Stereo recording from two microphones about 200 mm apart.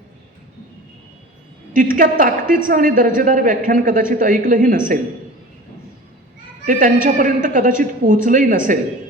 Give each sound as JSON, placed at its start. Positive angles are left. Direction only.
{"t": 1.7, "sound": "a woman's voice", "side_deg": -45}
{"t": 6.7, "sound": "a woman's voice", "side_deg": -45}